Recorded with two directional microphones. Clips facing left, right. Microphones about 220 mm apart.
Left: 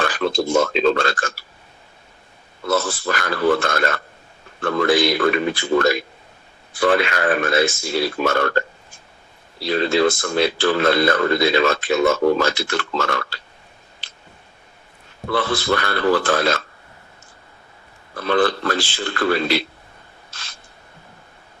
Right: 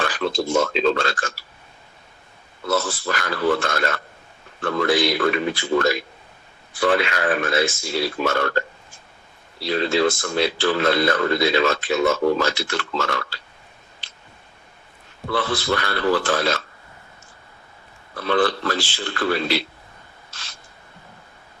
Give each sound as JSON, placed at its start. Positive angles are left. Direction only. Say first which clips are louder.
{"t": 0.0, "sound": "speech", "louder": "left 3 dB", "side_deg": 50}
{"t": 2.6, "sound": "speech", "louder": "left 2 dB", "side_deg": 50}
{"t": 9.6, "sound": "speech", "louder": "left 2 dB", "side_deg": 50}
{"t": 15.3, "sound": "speech", "louder": "left 2 dB", "side_deg": 50}
{"t": 18.2, "sound": "speech", "louder": "left 2 dB", "side_deg": 45}